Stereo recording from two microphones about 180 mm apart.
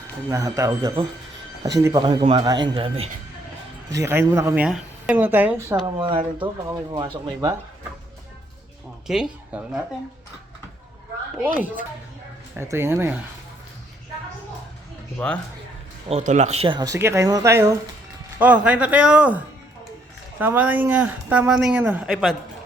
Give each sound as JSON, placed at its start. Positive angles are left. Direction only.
{"t": 0.3, "sound": "speech", "side_deg": -15}
{"t": 3.9, "sound": "speech", "side_deg": -15}
{"t": 6.0, "sound": "speech", "side_deg": -30}
{"t": 9.0, "sound": "speech", "side_deg": -5}
{"t": 11.4, "sound": "speech", "side_deg": -10}
{"t": 15.2, "sound": "speech", "side_deg": 5}
{"t": 16.0, "sound": "speech", "side_deg": -40}
{"t": 20.4, "sound": "speech", "side_deg": -10}